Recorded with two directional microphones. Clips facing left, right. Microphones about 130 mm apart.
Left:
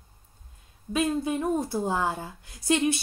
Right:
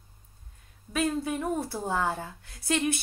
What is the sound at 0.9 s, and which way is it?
A woman's voice, 15° left (ahead or behind).